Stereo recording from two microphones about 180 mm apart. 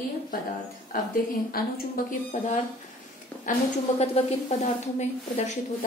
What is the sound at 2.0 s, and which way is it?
Speech, 55° left (ahead or behind).